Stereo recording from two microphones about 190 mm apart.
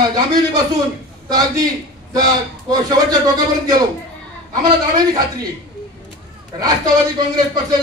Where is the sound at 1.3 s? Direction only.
20° right (ahead or behind).